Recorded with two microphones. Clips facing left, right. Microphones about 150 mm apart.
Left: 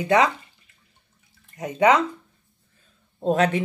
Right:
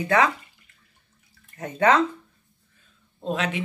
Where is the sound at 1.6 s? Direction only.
15° left (ahead or behind).